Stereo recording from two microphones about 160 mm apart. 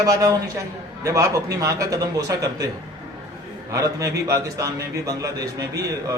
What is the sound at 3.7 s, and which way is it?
A man's voice, 20° right (ahead or behind).